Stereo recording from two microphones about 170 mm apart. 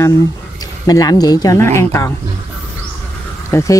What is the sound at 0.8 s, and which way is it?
Speech, 20° left (ahead or behind).